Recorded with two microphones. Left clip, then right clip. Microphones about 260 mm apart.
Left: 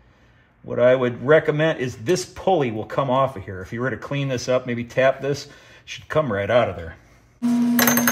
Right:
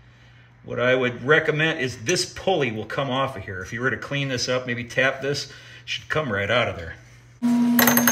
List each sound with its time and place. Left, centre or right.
0.7 s speech: left
7.4 s coin: centre